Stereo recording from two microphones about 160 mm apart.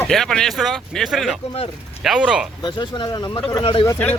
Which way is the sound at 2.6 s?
25° left (ahead or behind).